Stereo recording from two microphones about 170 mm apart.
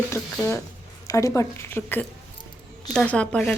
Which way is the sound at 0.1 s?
15° left (ahead or behind).